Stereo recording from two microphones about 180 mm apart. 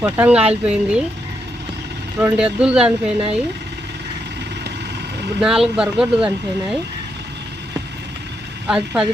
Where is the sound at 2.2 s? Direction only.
5° right (ahead or behind).